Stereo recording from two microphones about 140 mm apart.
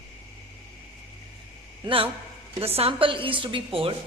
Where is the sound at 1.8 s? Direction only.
40° right (ahead or behind).